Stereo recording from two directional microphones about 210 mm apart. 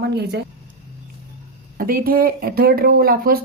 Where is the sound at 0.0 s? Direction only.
50° right (ahead or behind).